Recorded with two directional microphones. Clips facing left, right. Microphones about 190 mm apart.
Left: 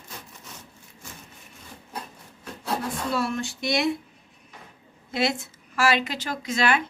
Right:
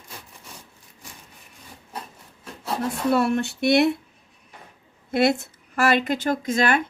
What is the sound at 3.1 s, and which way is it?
Speech, 60° right (ahead or behind).